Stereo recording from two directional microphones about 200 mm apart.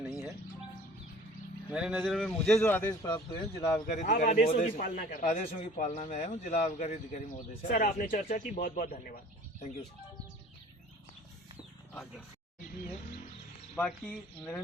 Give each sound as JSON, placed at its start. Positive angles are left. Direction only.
{"t": 0.0, "sound": "music", "side_deg": 0}
{"t": 1.7, "sound": "a man's voice", "side_deg": -5}
{"t": 3.1, "sound": "speech", "side_deg": 20}
{"t": 3.9, "sound": "a man's voice", "side_deg": 40}
{"t": 13.7, "sound": "speech", "side_deg": 10}